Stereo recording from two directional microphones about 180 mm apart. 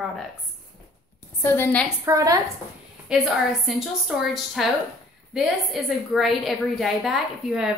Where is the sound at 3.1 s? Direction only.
Centre (ahead or behind).